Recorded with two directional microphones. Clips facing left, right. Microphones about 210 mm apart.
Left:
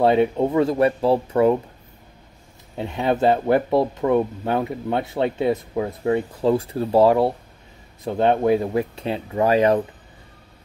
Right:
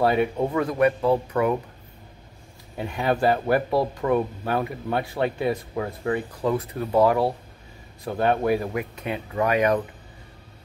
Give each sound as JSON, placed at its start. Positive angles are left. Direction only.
{"t": 0.0, "sound": "speech", "side_deg": 25}
{"t": 2.8, "sound": "speech", "side_deg": 25}